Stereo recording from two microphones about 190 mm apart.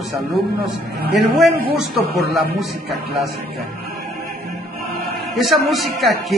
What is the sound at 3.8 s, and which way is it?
Music, 50° right (ahead or behind).